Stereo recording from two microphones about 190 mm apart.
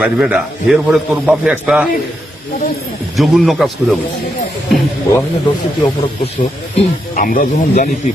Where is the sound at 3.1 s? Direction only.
Centre (ahead or behind).